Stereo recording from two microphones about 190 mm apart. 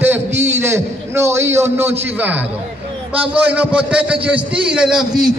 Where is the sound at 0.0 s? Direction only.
10° right (ahead or behind).